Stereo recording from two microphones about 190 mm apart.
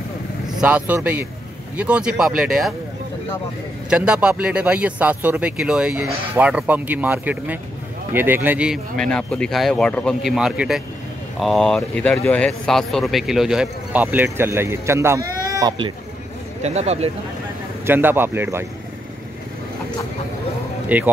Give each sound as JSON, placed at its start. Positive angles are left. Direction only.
{"t": 0.6, "sound": "a man's voice", "side_deg": -10}
{"t": 3.9, "sound": "a man's voice", "side_deg": -5}
{"t": 16.6, "sound": "speech", "side_deg": -35}
{"t": 17.8, "sound": "a man's voice", "side_deg": -10}
{"t": 20.9, "sound": "a man's voice", "side_deg": -10}